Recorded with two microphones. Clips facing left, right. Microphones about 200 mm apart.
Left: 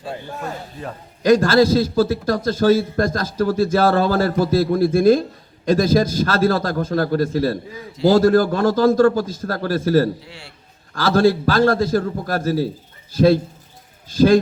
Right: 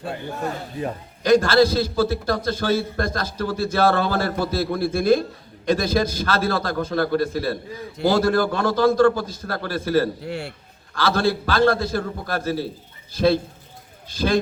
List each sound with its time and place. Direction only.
1.3 s a man's voice: 45° left (ahead or behind)
10.2 s a man's voice: 55° right (ahead or behind)
10.9 s a man's voice: 45° left (ahead or behind)